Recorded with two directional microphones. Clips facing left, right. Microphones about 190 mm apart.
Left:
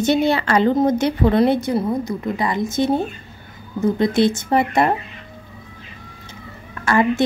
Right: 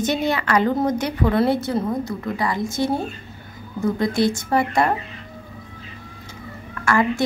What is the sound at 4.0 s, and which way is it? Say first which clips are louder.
Speech: left 3 dB; 20° left (ahead or behind).